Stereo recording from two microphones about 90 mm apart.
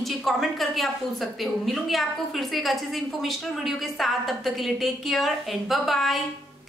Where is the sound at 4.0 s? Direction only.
Centre (ahead or behind).